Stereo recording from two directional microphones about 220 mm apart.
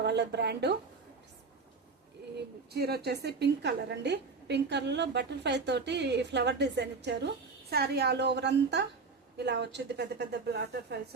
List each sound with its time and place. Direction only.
0.0 s a woman's voice: 50° right (ahead or behind)
2.7 s a woman's voice: 45° right (ahead or behind)